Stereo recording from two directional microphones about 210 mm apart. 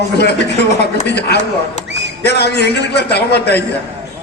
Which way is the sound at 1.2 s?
50° left (ahead or behind).